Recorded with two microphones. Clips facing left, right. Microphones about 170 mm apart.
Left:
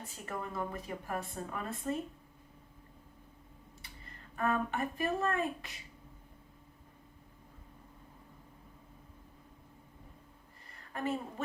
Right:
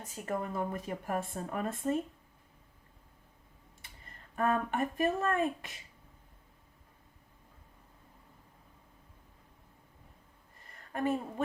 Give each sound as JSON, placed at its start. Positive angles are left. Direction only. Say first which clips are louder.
{"t": 0.3, "sound": "speech", "louder": "right 4 dB", "side_deg": -45}
{"t": 4.4, "sound": "speech", "louder": "right 2 dB", "side_deg": -45}
{"t": 10.9, "sound": "speech", "louder": "right 4 dB", "side_deg": -50}